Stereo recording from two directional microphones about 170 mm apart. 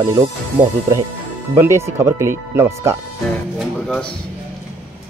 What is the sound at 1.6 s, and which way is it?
Speech, 15° right (ahead or behind).